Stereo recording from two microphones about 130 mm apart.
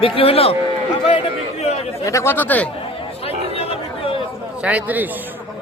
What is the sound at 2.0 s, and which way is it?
Speech, 20° left (ahead or behind).